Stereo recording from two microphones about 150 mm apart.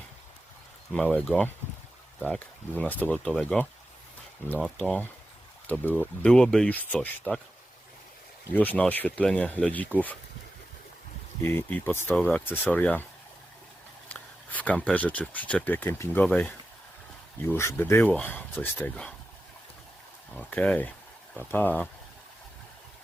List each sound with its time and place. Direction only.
0.9 s speech: 5° left (ahead or behind)
8.5 s speech: 10° left (ahead or behind)
11.4 s speech: 15° left (ahead or behind)
14.1 s speech: 10° left (ahead or behind)
17.5 s speech: 20° left (ahead or behind)
20.3 s speech: 10° left (ahead or behind)